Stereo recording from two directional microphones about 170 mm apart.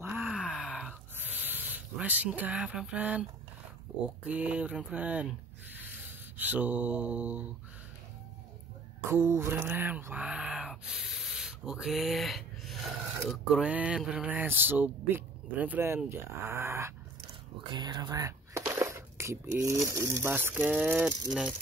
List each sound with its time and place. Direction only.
0.0 s groan: 5° right (ahead or behind)
4.2 s speech: 5° right (ahead or behind)
6.3 s mantra: 10° right (ahead or behind)
9.1 s speech: 15° right (ahead or behind)
17.6 s speech: 25° right (ahead or behind); by 21.1 s 10° right (ahead or behind)